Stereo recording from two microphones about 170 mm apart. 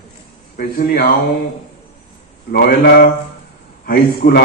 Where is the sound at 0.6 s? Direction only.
60° left (ahead or behind).